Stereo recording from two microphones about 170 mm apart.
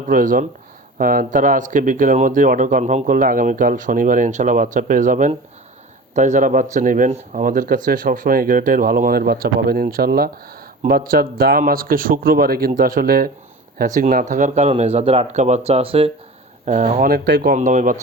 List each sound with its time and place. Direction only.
0.1 s speech: 55° right (ahead or behind)
17.1 s speech: 65° right (ahead or behind); by 17.9 s 45° right (ahead or behind)